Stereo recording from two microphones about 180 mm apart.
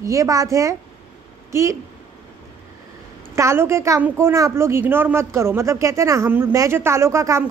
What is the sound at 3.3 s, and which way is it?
A woman's voice, 15° right (ahead or behind).